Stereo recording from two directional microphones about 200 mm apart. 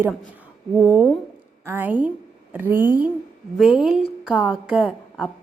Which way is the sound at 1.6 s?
10° right (ahead or behind).